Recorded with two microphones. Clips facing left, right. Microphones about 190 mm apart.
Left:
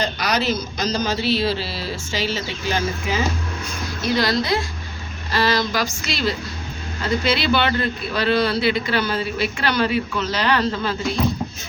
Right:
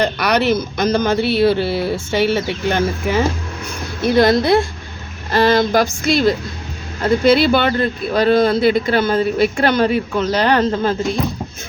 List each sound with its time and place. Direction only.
0.0 s speech: 60° right (ahead or behind)